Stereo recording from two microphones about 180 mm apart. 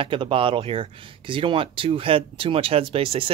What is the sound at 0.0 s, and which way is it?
Speech, 30° right (ahead or behind).